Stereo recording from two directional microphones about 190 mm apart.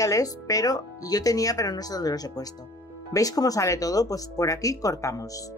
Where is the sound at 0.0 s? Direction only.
20° left (ahead or behind).